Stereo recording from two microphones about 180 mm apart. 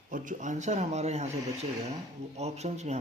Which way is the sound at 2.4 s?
35° right (ahead or behind).